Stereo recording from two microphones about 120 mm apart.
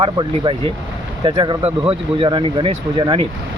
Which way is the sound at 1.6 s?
55° right (ahead or behind).